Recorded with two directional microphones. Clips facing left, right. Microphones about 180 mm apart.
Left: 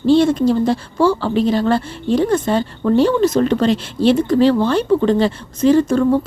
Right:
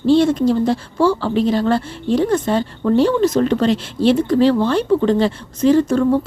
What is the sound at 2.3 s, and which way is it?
Speech, 25° left (ahead or behind).